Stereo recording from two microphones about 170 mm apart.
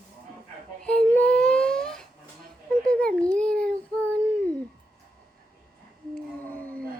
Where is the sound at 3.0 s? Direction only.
5° left (ahead or behind).